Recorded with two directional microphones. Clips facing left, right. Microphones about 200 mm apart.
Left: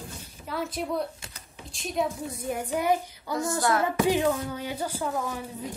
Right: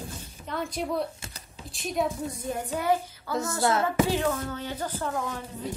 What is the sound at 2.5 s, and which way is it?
Speech, 15° left (ahead or behind).